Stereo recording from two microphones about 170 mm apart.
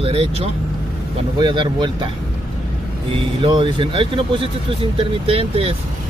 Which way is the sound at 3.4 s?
30° right (ahead or behind).